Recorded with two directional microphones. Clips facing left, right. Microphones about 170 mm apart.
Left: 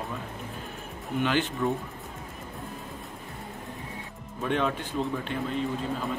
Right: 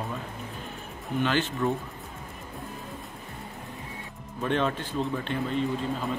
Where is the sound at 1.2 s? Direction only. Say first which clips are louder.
Even; 15° left (ahead or behind).